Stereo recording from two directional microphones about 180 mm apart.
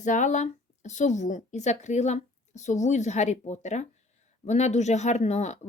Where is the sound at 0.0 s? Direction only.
45° left (ahead or behind).